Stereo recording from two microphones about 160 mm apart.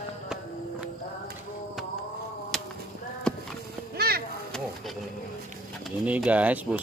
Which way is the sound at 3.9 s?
75° right (ahead or behind).